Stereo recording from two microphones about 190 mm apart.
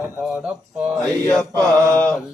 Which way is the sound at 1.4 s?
20° right (ahead or behind).